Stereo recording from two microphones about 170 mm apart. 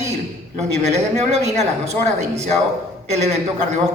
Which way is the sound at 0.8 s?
40° right (ahead or behind).